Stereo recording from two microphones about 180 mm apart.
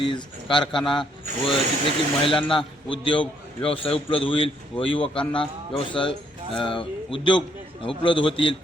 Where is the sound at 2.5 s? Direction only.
30° left (ahead or behind).